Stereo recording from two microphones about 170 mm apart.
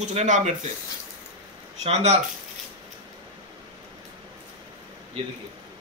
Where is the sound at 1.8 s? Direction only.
40° right (ahead or behind).